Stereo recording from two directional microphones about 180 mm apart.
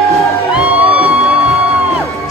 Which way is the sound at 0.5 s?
5° right (ahead or behind).